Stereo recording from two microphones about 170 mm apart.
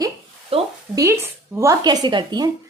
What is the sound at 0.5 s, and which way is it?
Speech, 35° right (ahead or behind).